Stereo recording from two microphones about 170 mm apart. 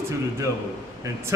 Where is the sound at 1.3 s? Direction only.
15° right (ahead or behind).